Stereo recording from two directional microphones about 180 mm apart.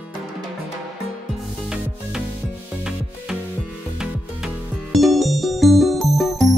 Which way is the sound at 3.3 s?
5° right (ahead or behind).